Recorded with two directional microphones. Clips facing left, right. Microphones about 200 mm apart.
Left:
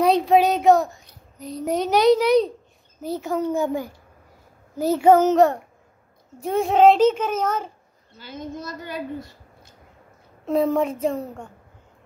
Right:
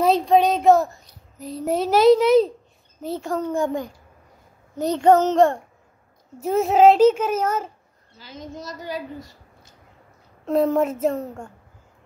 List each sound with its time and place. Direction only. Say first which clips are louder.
0.0 s a woman's voice: even; centre (ahead or behind)
8.2 s a woman's voice: left 3 dB; 55° left (ahead or behind)
10.4 s a child's voice: right 1 dB; centre (ahead or behind)